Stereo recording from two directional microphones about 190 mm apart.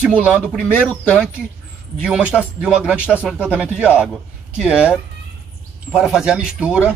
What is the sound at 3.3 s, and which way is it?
A man's voice, 5° right (ahead or behind).